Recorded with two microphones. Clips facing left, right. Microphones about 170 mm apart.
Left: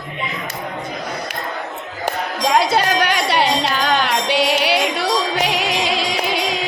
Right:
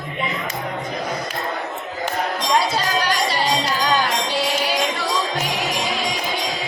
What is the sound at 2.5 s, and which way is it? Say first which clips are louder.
Music: left 6 dB; 65° left (ahead or behind).